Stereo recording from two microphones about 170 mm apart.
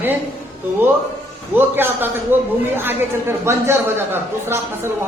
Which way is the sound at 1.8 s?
10° right (ahead or behind).